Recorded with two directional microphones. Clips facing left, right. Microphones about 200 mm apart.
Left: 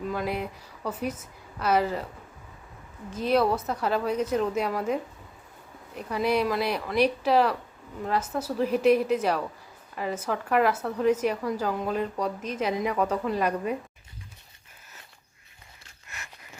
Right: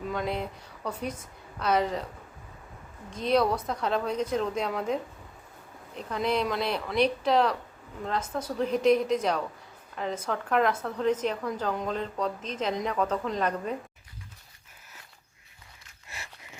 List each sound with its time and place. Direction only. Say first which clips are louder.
0.1 s a woman's voice: right 1 dB; 5° left (ahead or behind)
3.1 s a woman's voice: left 1 dB; 5° left (ahead or behind)
16.0 s a sound: right 1 dB; 30° right (ahead or behind)